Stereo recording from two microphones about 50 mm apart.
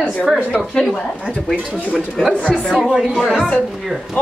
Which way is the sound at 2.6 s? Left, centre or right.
Centre.